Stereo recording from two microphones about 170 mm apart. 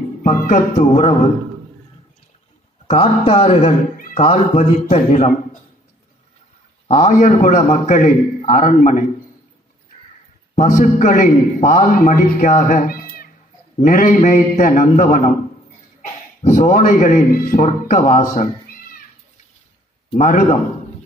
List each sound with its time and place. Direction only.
0.2 s music: 55° left (ahead or behind)
0.7 s speech: 40° left (ahead or behind)
2.9 s speech: 35° left (ahead or behind)
6.9 s a man's voice: 45° left (ahead or behind)
10.5 s a man's voice: 50° left (ahead or behind)
16.4 s a man's voice: 50° left (ahead or behind)
20.2 s a man's voice: 45° left (ahead or behind)